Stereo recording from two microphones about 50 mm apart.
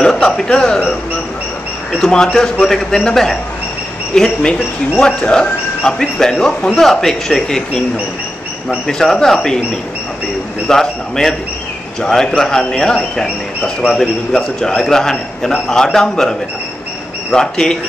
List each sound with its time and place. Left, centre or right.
0.0 s a man's voice: centre
2.6 s a man's voice: centre